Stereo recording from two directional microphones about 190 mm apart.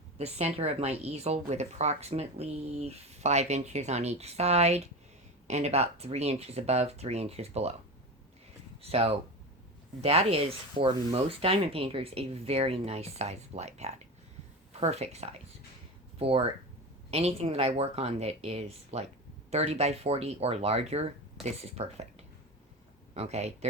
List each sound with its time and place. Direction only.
0.2 s speech: 35° right (ahead or behind)
8.8 s speech: 30° right (ahead or behind)
23.1 s speech: 35° right (ahead or behind)